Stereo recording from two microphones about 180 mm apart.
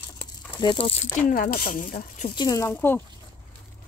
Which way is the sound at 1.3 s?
55° left (ahead or behind).